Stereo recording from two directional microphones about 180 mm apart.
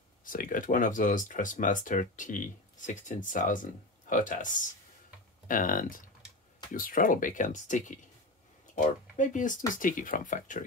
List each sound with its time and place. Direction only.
0.2 s speech: 50° left (ahead or behind)